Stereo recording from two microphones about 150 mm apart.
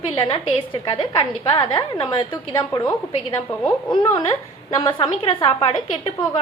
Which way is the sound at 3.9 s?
25° left (ahead or behind).